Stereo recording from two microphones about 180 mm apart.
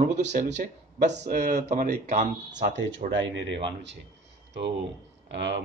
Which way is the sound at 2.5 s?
80° right.